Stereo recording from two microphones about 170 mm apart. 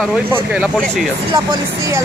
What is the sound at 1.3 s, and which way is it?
Speech, 20° right (ahead or behind).